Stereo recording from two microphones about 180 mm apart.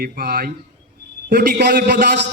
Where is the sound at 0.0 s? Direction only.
55° right (ahead or behind).